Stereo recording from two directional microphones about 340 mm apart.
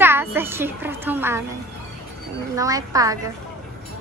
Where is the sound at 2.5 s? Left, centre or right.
Centre.